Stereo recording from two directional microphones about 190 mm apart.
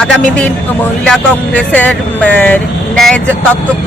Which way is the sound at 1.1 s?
5° left (ahead or behind).